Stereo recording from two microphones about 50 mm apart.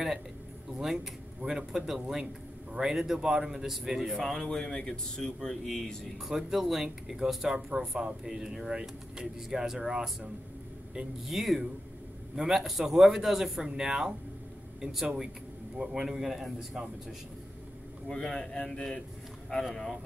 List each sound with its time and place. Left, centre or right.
1.7 s speech: centre
4.2 s speech: centre
6.2 s speech: centre
18.1 s a man's voice: centre